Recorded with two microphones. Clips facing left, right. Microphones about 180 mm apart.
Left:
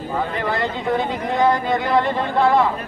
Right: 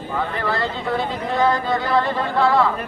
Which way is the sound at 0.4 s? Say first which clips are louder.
Left 1 dB; 20° left (ahead or behind).